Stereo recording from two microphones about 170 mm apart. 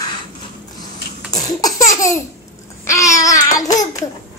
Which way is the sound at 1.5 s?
20° left (ahead or behind).